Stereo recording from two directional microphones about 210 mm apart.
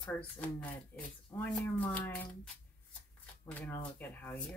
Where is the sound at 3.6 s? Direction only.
10° left (ahead or behind).